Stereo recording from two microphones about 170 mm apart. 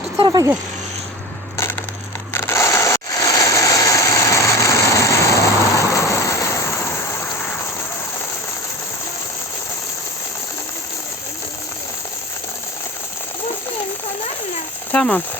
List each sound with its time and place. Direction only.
0.2 s speech: 25° right (ahead or behind)
2.3 s a sound: 15° left (ahead or behind)
14.9 s speech: 5° left (ahead or behind)